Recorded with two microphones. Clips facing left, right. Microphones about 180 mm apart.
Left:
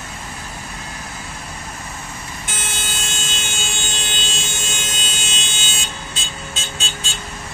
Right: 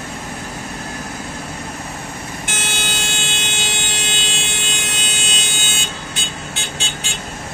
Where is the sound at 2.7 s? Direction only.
65° right (ahead or behind).